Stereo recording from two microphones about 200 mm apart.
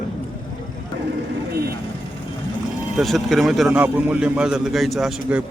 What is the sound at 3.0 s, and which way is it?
A man's voice, centre (ahead or behind).